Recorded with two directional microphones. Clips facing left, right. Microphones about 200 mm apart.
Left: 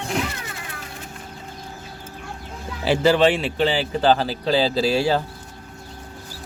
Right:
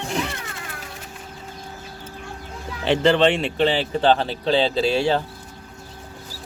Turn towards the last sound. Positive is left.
turn(degrees=5)  # may be behind; listen again after turning